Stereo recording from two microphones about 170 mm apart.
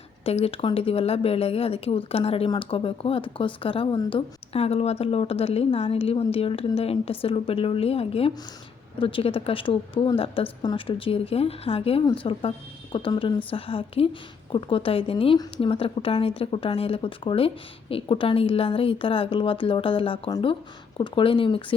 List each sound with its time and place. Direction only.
0.3 s a woman's voice: 35° left (ahead or behind)